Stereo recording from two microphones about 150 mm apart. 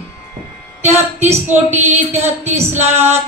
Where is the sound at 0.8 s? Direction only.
50° right (ahead or behind).